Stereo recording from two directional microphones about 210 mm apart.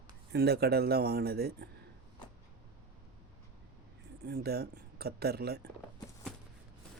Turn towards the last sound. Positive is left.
turn(degrees=-50)  # may be behind; listen again after turning